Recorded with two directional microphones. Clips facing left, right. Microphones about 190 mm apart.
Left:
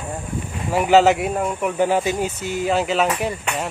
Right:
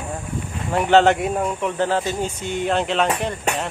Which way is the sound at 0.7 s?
5° left (ahead or behind).